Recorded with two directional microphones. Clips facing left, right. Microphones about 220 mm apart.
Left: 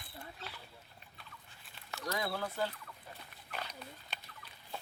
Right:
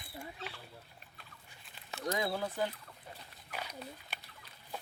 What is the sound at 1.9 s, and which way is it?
Speech, 20° right (ahead or behind).